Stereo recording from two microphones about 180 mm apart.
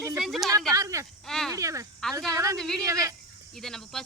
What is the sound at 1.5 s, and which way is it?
Speech, 15° right (ahead or behind).